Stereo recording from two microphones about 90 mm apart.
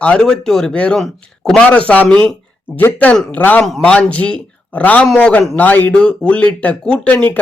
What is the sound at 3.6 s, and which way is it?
Speech, 5° left (ahead or behind).